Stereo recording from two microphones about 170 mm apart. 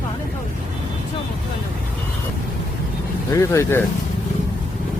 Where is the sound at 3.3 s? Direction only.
15° left (ahead or behind).